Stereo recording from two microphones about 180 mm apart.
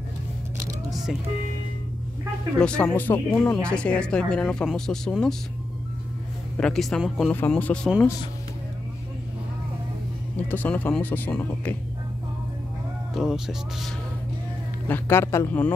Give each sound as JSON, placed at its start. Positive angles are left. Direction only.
{"t": 2.6, "sound": "speech", "side_deg": 5}
{"t": 6.6, "sound": "speech", "side_deg": 5}
{"t": 10.3, "sound": "speech", "side_deg": 10}
{"t": 13.1, "sound": "speech", "side_deg": 0}
{"t": 14.9, "sound": "speech", "side_deg": 15}